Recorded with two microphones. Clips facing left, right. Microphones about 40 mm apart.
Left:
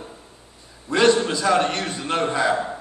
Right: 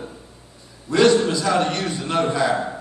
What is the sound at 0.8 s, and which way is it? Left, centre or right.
A man's voice, left.